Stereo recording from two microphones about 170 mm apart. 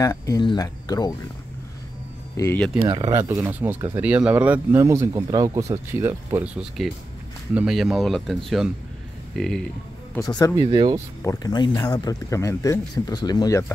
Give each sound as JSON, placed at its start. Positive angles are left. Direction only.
{"t": 0.0, "sound": "speech", "side_deg": 20}
{"t": 2.3, "sound": "speech", "side_deg": 15}
{"t": 2.8, "sound": "speech", "side_deg": -30}
{"t": 3.1, "sound": "speech", "side_deg": -15}
{"t": 10.1, "sound": "speech", "side_deg": 20}
{"t": 10.5, "sound": "speech", "side_deg": -25}
{"t": 11.2, "sound": "speech", "side_deg": 25}